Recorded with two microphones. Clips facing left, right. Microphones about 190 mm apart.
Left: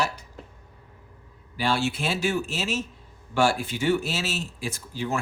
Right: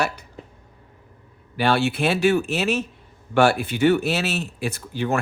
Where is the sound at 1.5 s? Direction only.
60° right (ahead or behind).